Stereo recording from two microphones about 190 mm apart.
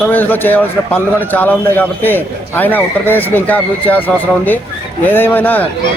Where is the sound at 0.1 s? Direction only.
10° left (ahead or behind).